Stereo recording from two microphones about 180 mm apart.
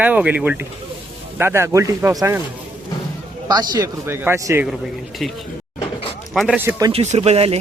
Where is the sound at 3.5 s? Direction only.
20° right (ahead or behind).